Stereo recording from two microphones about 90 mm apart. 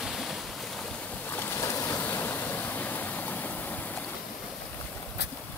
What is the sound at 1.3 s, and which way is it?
Waves, 25° left (ahead or behind).